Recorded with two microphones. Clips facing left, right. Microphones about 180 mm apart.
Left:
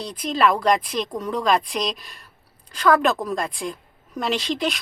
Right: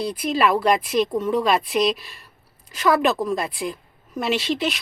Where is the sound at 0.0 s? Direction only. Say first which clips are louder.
Right 1 dB; 10° right (ahead or behind).